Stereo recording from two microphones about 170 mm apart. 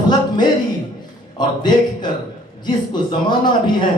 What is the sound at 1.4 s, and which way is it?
A man's voice, 25° left (ahead or behind).